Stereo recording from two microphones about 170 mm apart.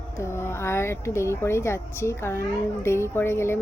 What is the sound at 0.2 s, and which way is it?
A woman's voice, 15° left (ahead or behind).